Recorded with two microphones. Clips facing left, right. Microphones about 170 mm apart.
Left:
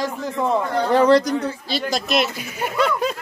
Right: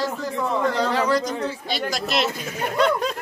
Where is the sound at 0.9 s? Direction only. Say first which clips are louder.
Left 7 dB; 55° left (ahead or behind).